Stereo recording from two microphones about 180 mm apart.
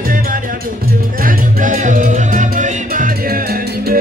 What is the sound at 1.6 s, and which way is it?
Music, 45° right (ahead or behind).